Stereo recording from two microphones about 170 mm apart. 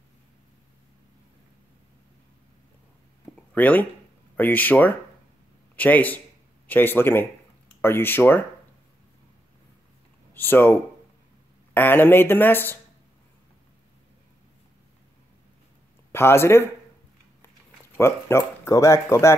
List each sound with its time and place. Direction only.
3.5 s speech: 10° left (ahead or behind)
10.3 s speech: 10° left (ahead or behind)
16.1 s speech: 15° left (ahead or behind)
17.9 s speech: 15° left (ahead or behind)